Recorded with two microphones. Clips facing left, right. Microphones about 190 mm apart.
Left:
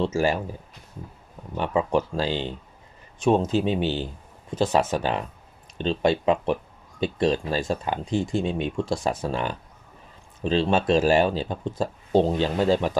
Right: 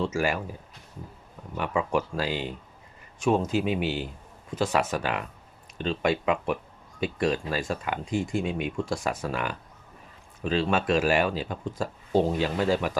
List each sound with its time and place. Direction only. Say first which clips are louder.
0.0 s speech: left 4 dB; 25° left (ahead or behind)
1.5 s speech: left 3 dB; 30° left (ahead or behind)